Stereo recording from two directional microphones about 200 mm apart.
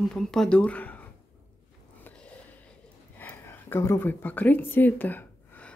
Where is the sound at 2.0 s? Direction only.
10° left (ahead or behind).